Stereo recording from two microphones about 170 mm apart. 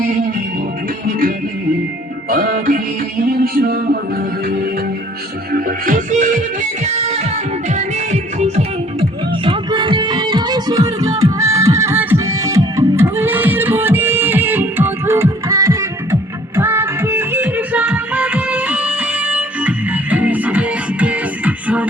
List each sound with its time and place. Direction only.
2.3 s music: 55° right (ahead or behind); by 21.8 s 10° right (ahead or behind)